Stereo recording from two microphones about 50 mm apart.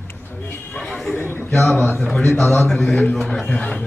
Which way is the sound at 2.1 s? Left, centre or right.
Centre.